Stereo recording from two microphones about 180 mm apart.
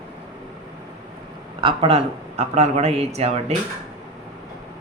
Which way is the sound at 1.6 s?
30° right (ahead or behind).